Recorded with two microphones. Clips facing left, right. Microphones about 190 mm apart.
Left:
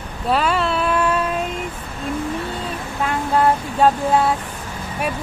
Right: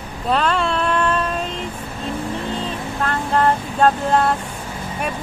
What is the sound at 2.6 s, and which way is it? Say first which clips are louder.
Vehicle: right 1 dB; 10° left (ahead or behind).